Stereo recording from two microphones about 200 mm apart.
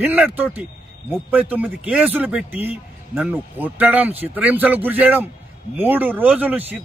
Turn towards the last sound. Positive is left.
turn(degrees=-10)  # may be behind; listen again after turning